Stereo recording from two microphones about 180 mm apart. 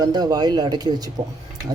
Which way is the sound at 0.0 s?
20° right (ahead or behind).